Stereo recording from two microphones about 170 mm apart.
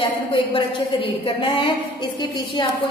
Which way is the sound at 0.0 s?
30° left (ahead or behind).